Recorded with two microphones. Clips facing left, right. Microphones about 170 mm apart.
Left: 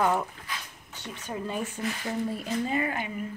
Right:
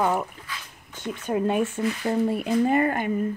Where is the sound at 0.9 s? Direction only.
55° right (ahead or behind).